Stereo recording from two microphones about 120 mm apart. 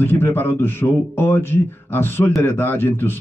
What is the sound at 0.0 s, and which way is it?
Speech, 20° left (ahead or behind).